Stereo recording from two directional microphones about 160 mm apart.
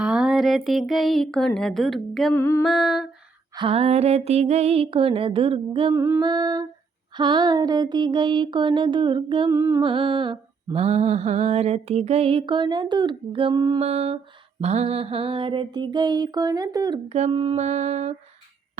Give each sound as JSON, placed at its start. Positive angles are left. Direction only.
{"t": 0.0, "sound": "a sound", "side_deg": -5}
{"t": 2.3, "sound": "music", "side_deg": 15}
{"t": 2.6, "sound": "a sound", "side_deg": 0}
{"t": 3.5, "sound": "mantra", "side_deg": -35}
{"t": 5.9, "sound": "music", "side_deg": -15}
{"t": 6.2, "sound": "mantra", "side_deg": -25}
{"t": 9.5, "sound": "music", "side_deg": -20}
{"t": 9.8, "sound": "mantra", "side_deg": -30}
{"t": 13.7, "sound": "mantra", "side_deg": -40}
{"t": 17.1, "sound": "mantra", "side_deg": -40}
{"t": 17.6, "sound": "mantra", "side_deg": -45}